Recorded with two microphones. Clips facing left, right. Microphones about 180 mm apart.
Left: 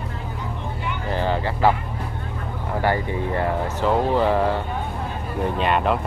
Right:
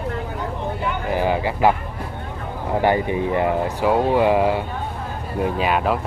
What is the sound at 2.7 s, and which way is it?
Speech, 20° right (ahead or behind).